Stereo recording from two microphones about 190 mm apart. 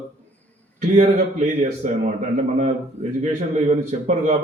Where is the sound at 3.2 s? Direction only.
35° right (ahead or behind).